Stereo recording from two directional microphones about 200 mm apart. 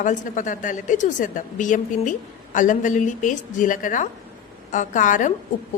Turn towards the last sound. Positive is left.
turn(degrees=40)  # may be behind; listen again after turning